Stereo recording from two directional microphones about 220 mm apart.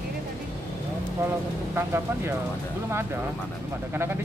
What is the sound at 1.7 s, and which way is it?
Speech, 10° right (ahead or behind).